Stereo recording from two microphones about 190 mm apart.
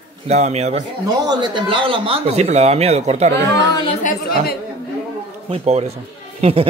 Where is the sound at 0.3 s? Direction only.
35° right (ahead or behind).